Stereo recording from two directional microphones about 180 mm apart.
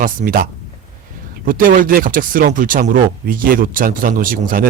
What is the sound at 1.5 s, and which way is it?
Speech, 50° right (ahead or behind).